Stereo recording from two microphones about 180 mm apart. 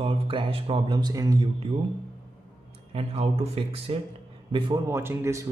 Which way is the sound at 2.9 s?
35° right (ahead or behind).